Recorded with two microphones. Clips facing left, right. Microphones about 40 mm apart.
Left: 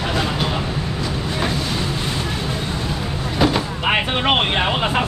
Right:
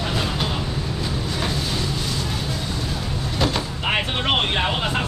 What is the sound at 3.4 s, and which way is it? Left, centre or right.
Speech, centre.